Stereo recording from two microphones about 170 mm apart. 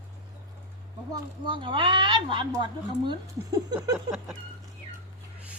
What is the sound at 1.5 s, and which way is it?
Speech, 30° right (ahead or behind).